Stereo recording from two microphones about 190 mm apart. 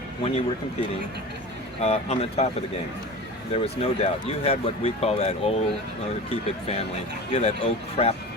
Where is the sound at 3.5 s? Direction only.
30° left (ahead or behind).